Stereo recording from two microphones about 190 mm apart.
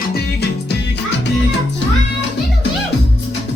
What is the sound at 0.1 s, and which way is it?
Music, 60° left (ahead or behind).